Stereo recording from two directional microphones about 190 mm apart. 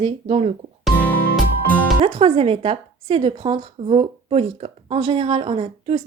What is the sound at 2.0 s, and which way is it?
A woman's voice, 30° right (ahead or behind).